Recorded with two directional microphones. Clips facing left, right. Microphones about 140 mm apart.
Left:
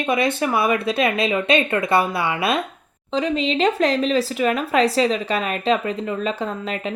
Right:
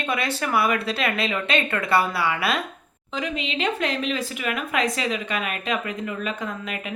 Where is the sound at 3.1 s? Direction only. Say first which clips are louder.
Left 7 dB; 35° left (ahead or behind).